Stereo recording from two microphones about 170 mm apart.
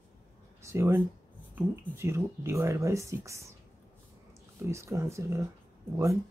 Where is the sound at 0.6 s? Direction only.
15° right (ahead or behind).